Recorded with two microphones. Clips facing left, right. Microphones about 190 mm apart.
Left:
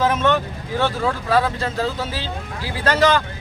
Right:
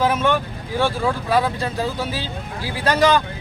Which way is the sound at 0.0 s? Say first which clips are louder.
Left 1 dB; 10° right (ahead or behind).